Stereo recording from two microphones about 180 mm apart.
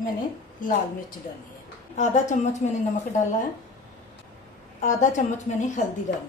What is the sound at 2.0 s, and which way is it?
Speech, 40° left (ahead or behind).